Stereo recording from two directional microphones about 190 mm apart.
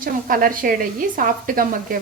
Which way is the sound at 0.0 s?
50° right (ahead or behind).